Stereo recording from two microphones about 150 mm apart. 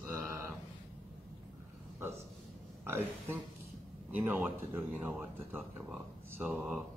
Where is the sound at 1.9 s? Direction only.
15° right (ahead or behind).